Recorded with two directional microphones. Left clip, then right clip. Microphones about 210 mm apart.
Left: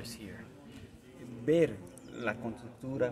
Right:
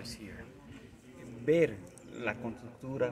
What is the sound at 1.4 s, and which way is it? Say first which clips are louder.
A man's voice: even; 10° right (ahead or behind).